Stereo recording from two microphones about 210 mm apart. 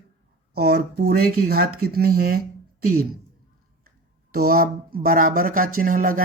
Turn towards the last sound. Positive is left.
turn(degrees=-40)  # may be behind; listen again after turning